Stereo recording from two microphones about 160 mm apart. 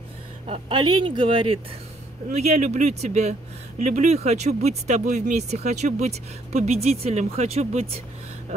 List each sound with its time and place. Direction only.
0.5 s speech: 30° right (ahead or behind)
2.3 s speech: 45° right (ahead or behind)